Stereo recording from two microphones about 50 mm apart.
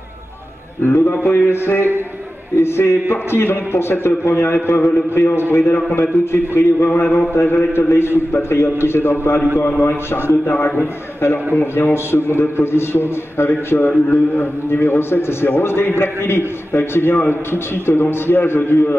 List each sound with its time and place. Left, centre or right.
0.8 s a man's voice: left
11.5 s a man's voice: left